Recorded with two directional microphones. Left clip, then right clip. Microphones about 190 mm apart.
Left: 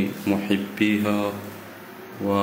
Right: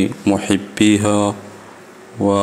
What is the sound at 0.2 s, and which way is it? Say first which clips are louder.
Speech: right 5 dB; 50° right (ahead or behind).